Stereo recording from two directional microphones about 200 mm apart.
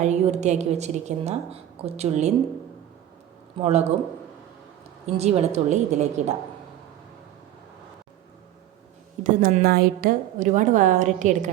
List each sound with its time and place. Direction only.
0.0 s a woman's voice: 35° right (ahead or behind)
3.6 s a woman's voice: 30° right (ahead or behind)
5.1 s a woman's voice: 30° right (ahead or behind)
9.2 s a woman's voice: 45° right (ahead or behind)